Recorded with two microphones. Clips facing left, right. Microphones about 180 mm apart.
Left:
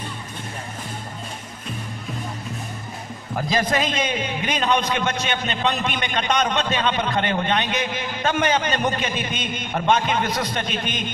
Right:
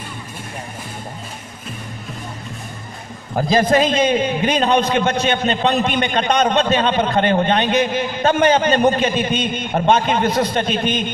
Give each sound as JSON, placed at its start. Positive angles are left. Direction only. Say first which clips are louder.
{"t": 3.3, "sound": "a man's voice", "louder": "right 7 dB", "side_deg": -30}